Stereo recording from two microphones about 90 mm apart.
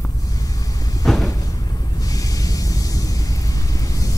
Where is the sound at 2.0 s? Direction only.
40° left (ahead or behind).